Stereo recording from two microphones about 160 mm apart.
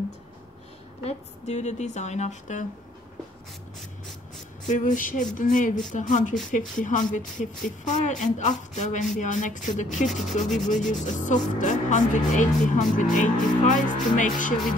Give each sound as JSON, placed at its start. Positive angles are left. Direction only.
{"t": 1.0, "sound": "speech", "side_deg": 45}
{"t": 4.7, "sound": "music", "side_deg": 55}
{"t": 5.9, "sound": "speech", "side_deg": 50}
{"t": 9.9, "sound": "rub", "side_deg": 0}
{"t": 10.9, "sound": "speech", "side_deg": 50}
{"t": 12.9, "sound": "music", "side_deg": 55}